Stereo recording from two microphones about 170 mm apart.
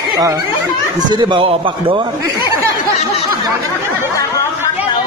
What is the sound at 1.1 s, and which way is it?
Speech, 30° right (ahead or behind).